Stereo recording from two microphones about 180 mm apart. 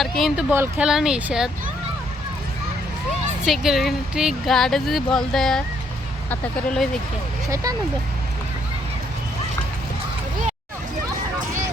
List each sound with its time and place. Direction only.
0.0 s speech: centre (ahead or behind)
0.5 s speech: 15° right (ahead or behind)
3.4 s speech: centre (ahead or behind)
7.5 s speech: 20° right (ahead or behind)